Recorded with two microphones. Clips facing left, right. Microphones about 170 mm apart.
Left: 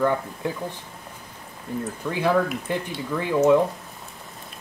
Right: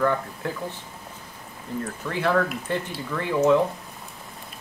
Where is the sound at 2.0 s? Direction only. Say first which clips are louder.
Left 2 dB; 15° left (ahead or behind).